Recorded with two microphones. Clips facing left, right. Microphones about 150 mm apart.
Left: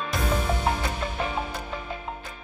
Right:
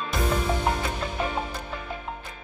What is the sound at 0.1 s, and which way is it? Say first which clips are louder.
Music: right 2 dB; centre (ahead or behind).